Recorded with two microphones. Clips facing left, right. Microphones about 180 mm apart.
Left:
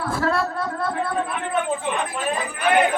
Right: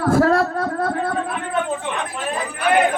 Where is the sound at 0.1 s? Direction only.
45° right (ahead or behind).